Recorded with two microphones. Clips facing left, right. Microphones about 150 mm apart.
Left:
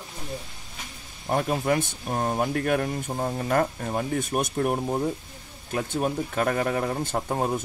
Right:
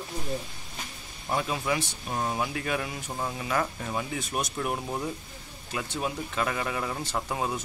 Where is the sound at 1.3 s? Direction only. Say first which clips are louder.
Left 5 dB; 45° left (ahead or behind).